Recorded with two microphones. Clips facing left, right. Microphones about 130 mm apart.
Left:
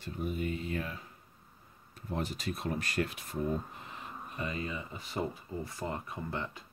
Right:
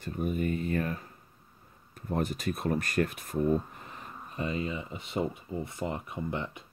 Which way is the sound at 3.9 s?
30° right (ahead or behind).